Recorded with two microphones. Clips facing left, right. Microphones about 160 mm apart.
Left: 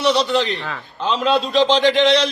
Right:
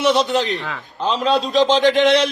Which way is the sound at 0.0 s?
50° right (ahead or behind).